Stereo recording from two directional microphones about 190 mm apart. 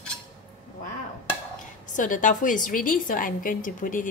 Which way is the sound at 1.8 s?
45° left (ahead or behind).